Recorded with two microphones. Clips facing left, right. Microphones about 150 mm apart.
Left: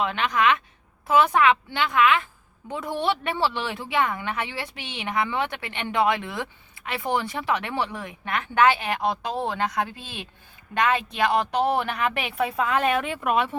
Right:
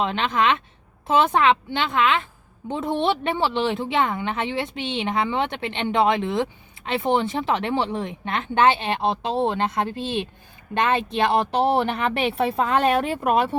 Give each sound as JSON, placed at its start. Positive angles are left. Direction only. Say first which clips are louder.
{"t": 0.0, "sound": "a woman's voice", "louder": "right 1 dB", "side_deg": -25}